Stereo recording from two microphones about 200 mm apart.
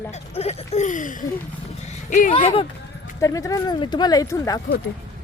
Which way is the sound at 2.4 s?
25° left (ahead or behind).